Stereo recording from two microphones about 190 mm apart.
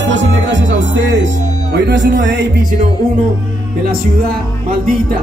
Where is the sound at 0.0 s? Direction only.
70° right (ahead or behind).